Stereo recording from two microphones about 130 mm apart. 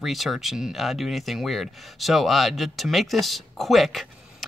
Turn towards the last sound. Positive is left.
turn(degrees=0)  # may be behind; listen again after turning